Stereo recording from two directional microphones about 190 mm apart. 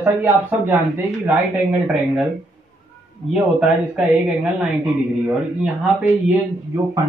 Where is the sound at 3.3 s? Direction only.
Centre (ahead or behind).